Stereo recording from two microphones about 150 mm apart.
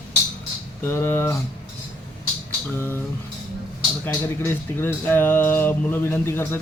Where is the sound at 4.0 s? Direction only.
15° left (ahead or behind).